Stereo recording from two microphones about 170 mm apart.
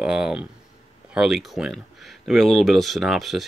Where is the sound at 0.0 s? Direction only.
5° right (ahead or behind).